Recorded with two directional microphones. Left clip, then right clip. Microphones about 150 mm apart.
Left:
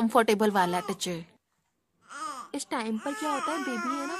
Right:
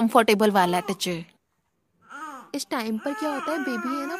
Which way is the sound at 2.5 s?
35° right (ahead or behind).